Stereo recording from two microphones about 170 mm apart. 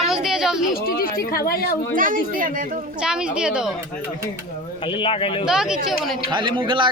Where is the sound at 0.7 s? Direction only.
60° left (ahead or behind).